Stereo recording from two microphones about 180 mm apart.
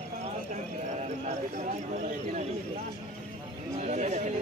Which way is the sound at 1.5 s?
45° right (ahead or behind).